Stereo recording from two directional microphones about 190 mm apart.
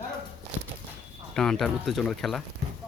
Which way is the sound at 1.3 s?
5° left (ahead or behind).